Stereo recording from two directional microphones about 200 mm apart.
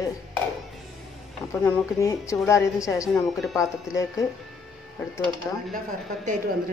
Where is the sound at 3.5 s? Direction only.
15° left (ahead or behind).